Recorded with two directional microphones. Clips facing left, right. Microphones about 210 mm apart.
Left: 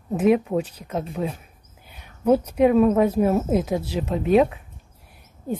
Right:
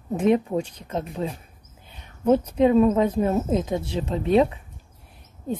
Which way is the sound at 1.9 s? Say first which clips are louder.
Left 1 dB; 10° left (ahead or behind).